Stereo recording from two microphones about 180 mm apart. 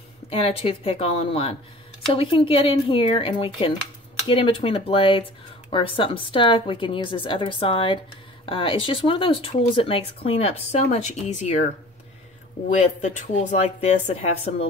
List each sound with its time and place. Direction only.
0.3 s a woman's voice: 30° left (ahead or behind)
12.6 s speech: 40° left (ahead or behind)